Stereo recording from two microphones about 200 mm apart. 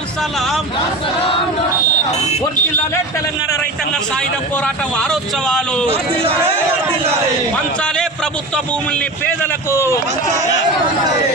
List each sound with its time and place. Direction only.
0.2 s a man's voice: centre (ahead or behind)
2.0 s speech: 35° left (ahead or behind)
3.9 s a man's voice: 5° left (ahead or behind)
7.8 s a man's voice: 5° left (ahead or behind)